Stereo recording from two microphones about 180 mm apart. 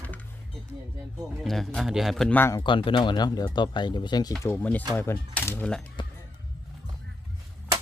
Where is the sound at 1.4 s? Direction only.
Centre (ahead or behind).